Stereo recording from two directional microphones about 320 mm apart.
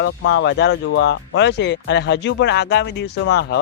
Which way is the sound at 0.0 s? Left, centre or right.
Left.